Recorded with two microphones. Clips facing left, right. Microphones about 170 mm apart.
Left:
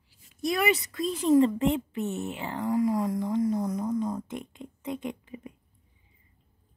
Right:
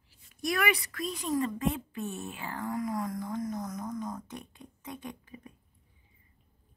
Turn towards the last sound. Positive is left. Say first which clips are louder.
# left 7 dB
turn(degrees=20)  # may be behind; listen again after turning